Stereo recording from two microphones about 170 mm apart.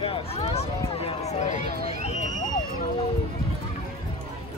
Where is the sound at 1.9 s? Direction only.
40° left (ahead or behind).